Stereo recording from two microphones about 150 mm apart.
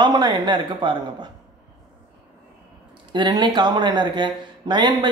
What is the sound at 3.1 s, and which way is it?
Speech, 30° right (ahead or behind).